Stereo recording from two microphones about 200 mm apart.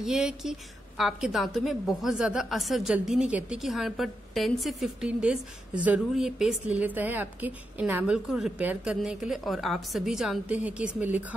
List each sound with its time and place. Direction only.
0.0 s a woman's voice: 5° right (ahead or behind)